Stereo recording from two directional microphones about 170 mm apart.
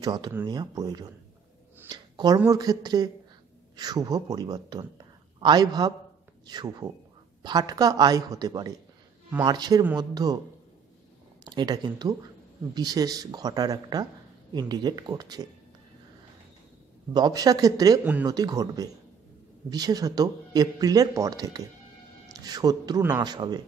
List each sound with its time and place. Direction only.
0.0 s speech: 25° right (ahead or behind)
11.4 s speech: 25° right (ahead or behind)
17.1 s speech: 25° right (ahead or behind)